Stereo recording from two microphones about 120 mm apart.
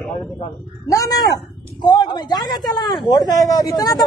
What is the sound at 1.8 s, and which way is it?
Speech, 35° left (ahead or behind).